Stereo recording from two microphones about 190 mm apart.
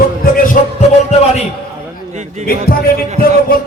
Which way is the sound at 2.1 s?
35° right (ahead or behind).